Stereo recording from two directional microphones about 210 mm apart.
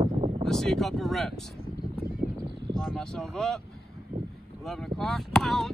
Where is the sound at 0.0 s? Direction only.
25° right (ahead or behind).